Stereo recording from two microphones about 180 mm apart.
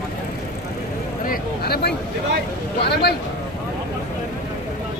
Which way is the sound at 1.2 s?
60° left (ahead or behind).